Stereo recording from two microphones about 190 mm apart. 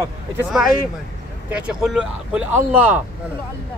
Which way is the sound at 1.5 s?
5° right (ahead or behind).